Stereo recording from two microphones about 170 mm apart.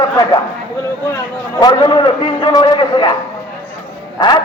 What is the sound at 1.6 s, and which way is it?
A man's voice, 25° left (ahead or behind).